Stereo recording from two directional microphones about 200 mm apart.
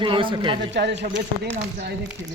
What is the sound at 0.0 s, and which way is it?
Speech, 25° right (ahead or behind).